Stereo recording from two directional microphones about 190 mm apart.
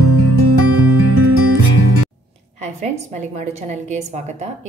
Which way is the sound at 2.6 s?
40° right (ahead or behind).